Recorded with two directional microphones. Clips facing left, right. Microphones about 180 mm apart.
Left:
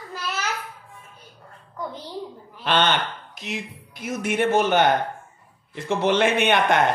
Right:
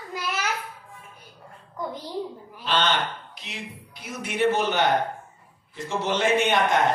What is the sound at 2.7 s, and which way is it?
Speech, 60° left (ahead or behind).